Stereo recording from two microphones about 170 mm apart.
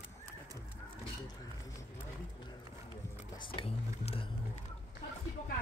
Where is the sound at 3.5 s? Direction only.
30° left (ahead or behind).